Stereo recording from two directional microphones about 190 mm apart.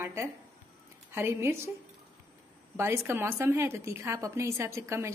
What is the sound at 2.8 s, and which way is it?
A woman's voice, 15° right (ahead or behind).